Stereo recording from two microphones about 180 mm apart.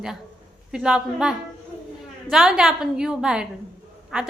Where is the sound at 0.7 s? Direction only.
5° right (ahead or behind).